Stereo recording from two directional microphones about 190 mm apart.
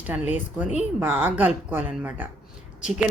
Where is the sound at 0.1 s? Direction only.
10° right (ahead or behind).